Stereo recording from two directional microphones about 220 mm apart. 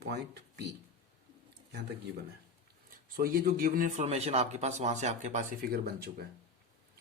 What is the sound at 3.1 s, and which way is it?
A man's voice, 40° right (ahead or behind).